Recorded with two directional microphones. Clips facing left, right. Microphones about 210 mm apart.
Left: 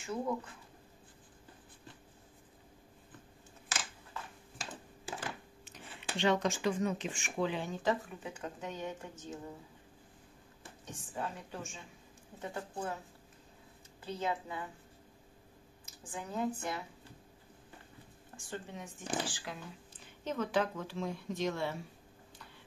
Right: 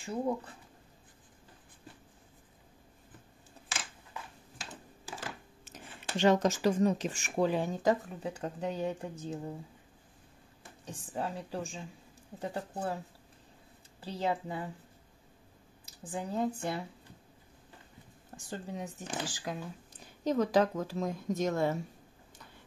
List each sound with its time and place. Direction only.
0.0 s speech: 35° right (ahead or behind)
5.7 s speech: 45° right (ahead or behind)
10.9 s speech: 35° right (ahead or behind)
14.0 s speech: 35° right (ahead or behind)
16.1 s speech: 35° right (ahead or behind)
18.3 s speech: 35° right (ahead or behind)